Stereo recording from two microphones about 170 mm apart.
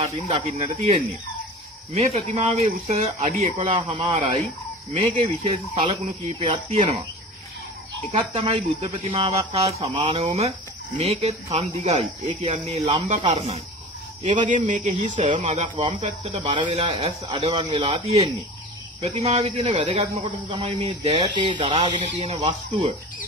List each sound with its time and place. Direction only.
0.0 s speech: 35° right (ahead or behind)
8.2 s speech: 35° right (ahead or behind)
15.7 s speech: 30° right (ahead or behind)
16.0 s speech: 45° right (ahead or behind)
16.3 s speech: 30° right (ahead or behind)